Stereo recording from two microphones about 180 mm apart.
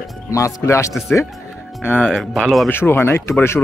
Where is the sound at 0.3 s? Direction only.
15° left (ahead or behind).